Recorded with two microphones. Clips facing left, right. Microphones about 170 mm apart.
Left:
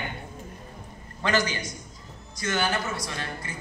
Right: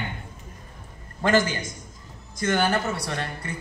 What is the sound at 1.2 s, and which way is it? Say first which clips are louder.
A man's voice: right 4 dB; 50° right (ahead or behind).